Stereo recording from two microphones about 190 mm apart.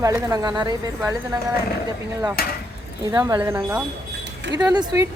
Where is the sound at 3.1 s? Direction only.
20° right (ahead or behind).